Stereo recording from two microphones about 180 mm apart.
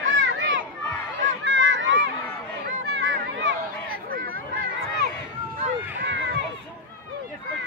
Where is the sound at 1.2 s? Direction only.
85° right.